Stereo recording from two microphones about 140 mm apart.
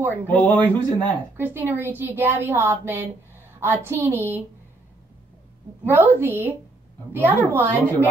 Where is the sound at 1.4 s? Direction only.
15° right (ahead or behind).